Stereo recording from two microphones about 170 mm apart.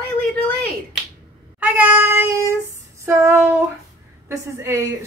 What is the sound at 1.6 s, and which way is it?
Speech, 10° right (ahead or behind).